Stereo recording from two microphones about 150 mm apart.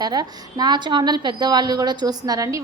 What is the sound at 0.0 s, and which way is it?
A woman's voice, 25° right (ahead or behind).